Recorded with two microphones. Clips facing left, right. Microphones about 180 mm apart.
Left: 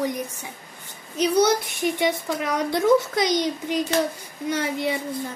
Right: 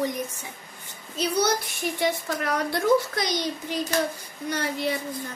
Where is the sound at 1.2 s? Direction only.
20° left (ahead or behind).